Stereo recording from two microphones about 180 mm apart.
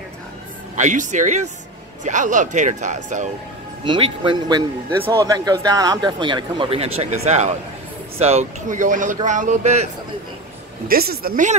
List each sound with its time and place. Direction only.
0.7 s speech: 45° right (ahead or behind)
3.8 s speech: 30° right (ahead or behind)
10.9 s speech: 55° right (ahead or behind)